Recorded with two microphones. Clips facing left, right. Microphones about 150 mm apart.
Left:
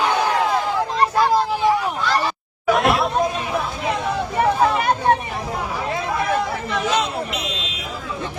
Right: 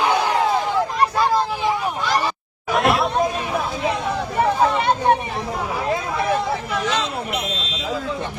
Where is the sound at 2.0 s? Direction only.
15° right (ahead or behind).